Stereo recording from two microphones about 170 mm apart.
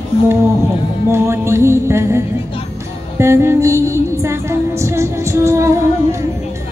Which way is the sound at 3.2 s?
15° right (ahead or behind).